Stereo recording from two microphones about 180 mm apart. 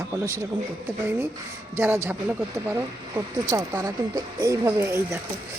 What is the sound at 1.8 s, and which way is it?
Speech, 15° right (ahead or behind).